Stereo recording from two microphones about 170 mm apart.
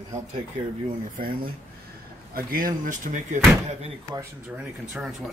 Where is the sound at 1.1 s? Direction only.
60° right (ahead or behind).